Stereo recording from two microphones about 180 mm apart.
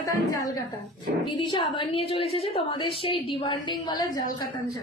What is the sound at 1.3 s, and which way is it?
A woman's voice, 25° left (ahead or behind).